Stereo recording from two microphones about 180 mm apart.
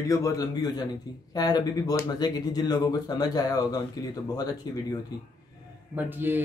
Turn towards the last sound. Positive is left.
turn(degrees=-10)  # may be behind; listen again after turning